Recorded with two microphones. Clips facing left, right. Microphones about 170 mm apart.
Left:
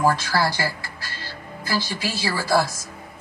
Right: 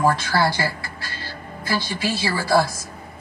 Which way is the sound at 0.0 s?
25° right (ahead or behind).